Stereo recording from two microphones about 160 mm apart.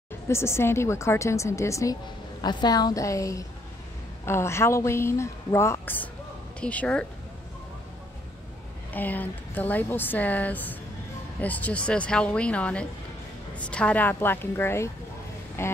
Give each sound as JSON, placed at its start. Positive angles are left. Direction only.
{"t": 0.3, "sound": "a woman's voice", "side_deg": 15}
{"t": 8.9, "sound": "speech", "side_deg": 10}